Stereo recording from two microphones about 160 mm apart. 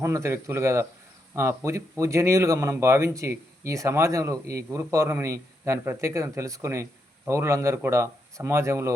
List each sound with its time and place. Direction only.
0.0 s speech: 20° right (ahead or behind)